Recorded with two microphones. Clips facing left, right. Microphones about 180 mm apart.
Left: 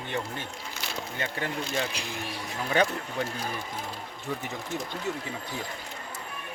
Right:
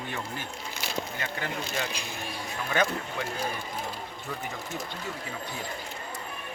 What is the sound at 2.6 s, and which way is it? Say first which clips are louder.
Speech: left 2 dB; 30° left (ahead or behind).